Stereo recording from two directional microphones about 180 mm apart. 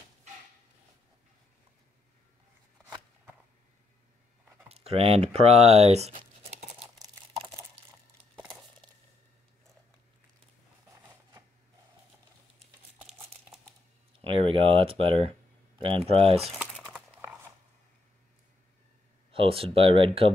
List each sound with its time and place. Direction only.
4.6 s a sound: 35° right (ahead or behind)
14.5 s speech: 30° right (ahead or behind)
19.3 s speech: 30° right (ahead or behind)